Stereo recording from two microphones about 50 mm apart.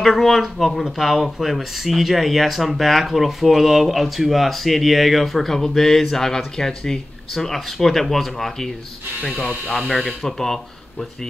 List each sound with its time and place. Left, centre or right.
0.0 s speech: centre
9.7 s speech: centre
9.9 s speech: centre